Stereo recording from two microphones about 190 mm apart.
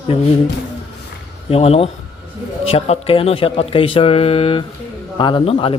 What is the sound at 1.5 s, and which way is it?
Speech, 30° left (ahead or behind).